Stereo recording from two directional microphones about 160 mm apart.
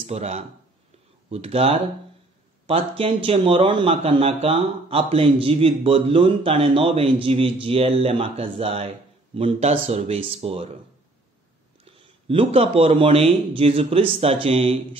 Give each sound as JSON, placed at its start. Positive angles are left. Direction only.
{"t": 0.0, "sound": "a man's voice", "side_deg": -40}
{"t": 11.8, "sound": "a man's voice", "side_deg": -35}